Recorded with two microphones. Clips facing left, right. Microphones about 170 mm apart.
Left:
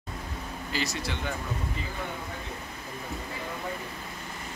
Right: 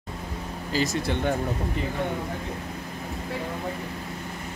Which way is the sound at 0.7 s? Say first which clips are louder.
Right 7 dB; 50° right (ahead or behind).